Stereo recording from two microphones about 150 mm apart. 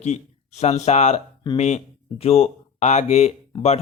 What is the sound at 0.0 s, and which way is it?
A man's voice, 50° left (ahead or behind).